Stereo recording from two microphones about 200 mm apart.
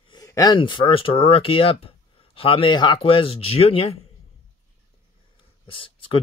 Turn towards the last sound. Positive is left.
turn(degrees=25)  # may be behind; listen again after turning